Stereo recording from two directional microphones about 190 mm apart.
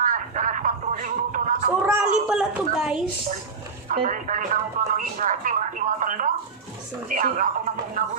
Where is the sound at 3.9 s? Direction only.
45° right (ahead or behind).